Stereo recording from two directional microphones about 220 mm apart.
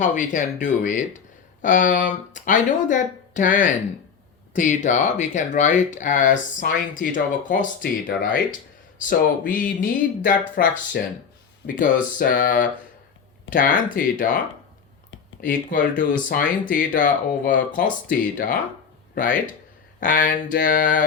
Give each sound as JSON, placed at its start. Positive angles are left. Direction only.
{"t": 0.0, "sound": "speech", "side_deg": 35}
{"t": 15.4, "sound": "speech", "side_deg": 40}